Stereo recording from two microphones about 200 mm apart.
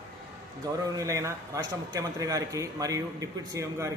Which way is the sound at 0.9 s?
15° right (ahead or behind).